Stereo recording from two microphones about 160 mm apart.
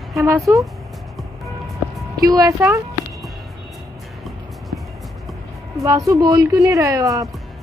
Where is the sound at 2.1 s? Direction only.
20° right (ahead or behind).